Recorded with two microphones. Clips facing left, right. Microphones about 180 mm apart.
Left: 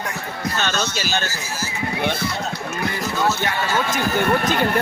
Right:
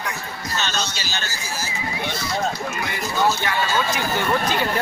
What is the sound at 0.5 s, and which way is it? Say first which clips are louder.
Speech: left 2 dB; 50° left (ahead or behind).